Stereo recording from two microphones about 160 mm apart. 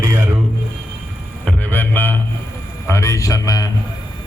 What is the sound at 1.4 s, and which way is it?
Music, 10° left (ahead or behind).